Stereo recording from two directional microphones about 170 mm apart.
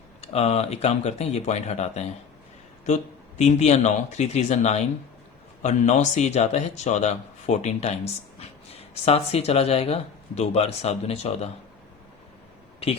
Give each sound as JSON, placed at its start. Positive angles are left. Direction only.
{"t": 0.2, "sound": "speech", "side_deg": 40}